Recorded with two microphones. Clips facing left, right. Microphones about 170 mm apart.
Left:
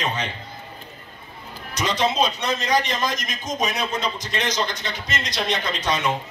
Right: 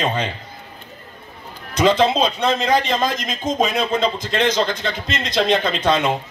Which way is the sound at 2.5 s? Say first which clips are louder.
Right 5 dB; 60° right (ahead or behind).